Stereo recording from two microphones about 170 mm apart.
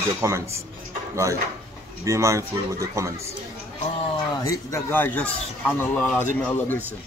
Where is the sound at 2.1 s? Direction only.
20° right (ahead or behind).